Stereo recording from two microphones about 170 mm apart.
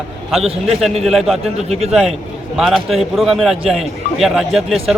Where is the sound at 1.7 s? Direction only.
40° right (ahead or behind).